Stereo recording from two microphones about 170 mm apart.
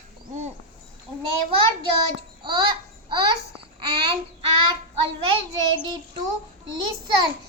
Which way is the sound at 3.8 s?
25° right (ahead or behind).